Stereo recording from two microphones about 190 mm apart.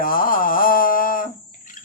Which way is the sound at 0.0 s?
50° left (ahead or behind).